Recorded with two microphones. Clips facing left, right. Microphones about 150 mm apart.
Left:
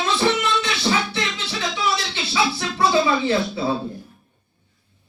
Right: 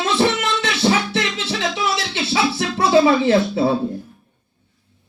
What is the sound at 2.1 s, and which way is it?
Speech, 85° right.